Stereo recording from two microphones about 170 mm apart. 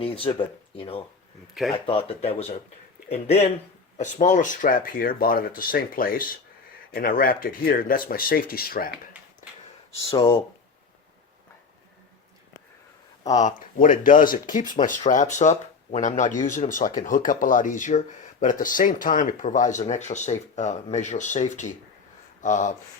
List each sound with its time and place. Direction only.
0.0 s speech: 35° left (ahead or behind); by 8.9 s 60° left (ahead or behind)
10.2 s speech: 25° left (ahead or behind)
13.3 s speech: 50° left (ahead or behind)